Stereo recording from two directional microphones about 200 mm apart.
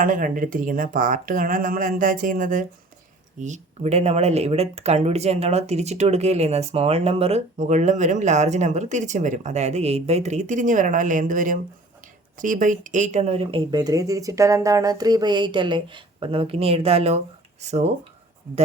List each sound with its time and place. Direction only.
0.0 s speech: 40° right (ahead or behind)